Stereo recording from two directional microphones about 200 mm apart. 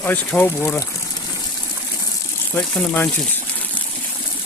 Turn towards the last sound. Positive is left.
turn(degrees=10)  # may be behind; listen again after turning